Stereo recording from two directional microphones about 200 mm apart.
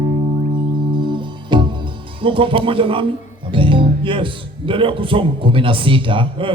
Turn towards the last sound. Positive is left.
turn(degrees=-25)  # may be behind; listen again after turning